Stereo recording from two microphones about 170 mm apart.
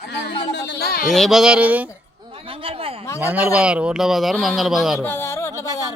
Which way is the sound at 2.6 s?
35° right (ahead or behind).